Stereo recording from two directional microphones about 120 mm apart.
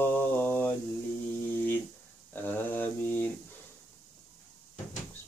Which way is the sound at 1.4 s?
15° left (ahead or behind).